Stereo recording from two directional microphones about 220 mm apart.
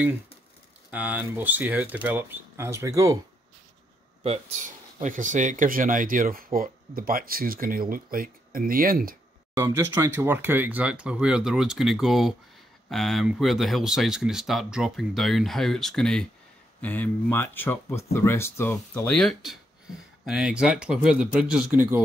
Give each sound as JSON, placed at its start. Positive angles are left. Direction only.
{"t": 0.9, "sound": "speech", "side_deg": -5}
{"t": 4.2, "sound": "speech", "side_deg": -30}
{"t": 9.5, "sound": "speech", "side_deg": -15}